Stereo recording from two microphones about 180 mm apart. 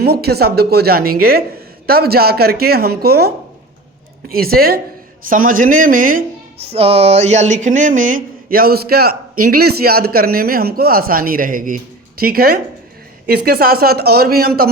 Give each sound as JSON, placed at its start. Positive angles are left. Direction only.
{"t": 0.0, "sound": "speech", "side_deg": -60}
{"t": 6.6, "sound": "speech", "side_deg": -35}